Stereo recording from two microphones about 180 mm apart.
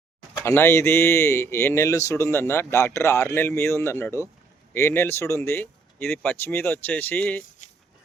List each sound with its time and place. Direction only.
0.4 s speech: 15° left (ahead or behind)